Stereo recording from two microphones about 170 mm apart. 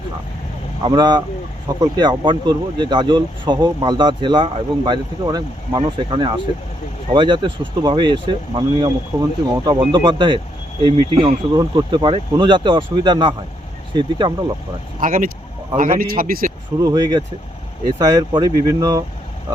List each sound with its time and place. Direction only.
0.8 s speech: 25° right (ahead or behind)
15.0 s speech: 50° right (ahead or behind)
16.8 s speech: 25° right (ahead or behind)